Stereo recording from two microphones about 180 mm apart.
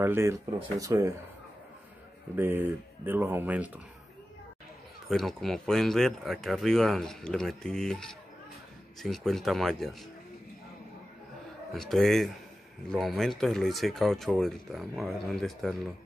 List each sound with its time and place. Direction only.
0.0 s speech: 15° right (ahead or behind)
2.3 s speech: 10° right (ahead or behind)
5.0 s speech: centre (ahead or behind)
11.7 s speech: centre (ahead or behind)